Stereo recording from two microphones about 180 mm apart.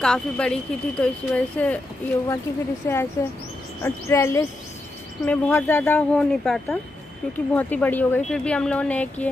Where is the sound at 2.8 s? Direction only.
15° left (ahead or behind).